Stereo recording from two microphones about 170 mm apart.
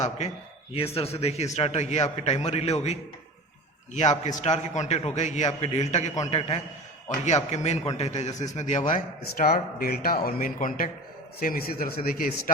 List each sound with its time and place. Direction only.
0.7 s a man's voice: 35° left (ahead or behind)
9.2 s speech: 60° left (ahead or behind)